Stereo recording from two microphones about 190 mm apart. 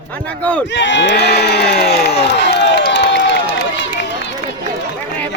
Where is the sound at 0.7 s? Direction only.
70° left (ahead or behind).